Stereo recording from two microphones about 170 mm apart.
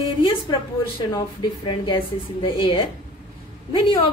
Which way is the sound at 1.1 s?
25° left (ahead or behind).